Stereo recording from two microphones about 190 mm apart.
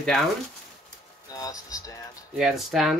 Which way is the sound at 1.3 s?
20° left (ahead or behind).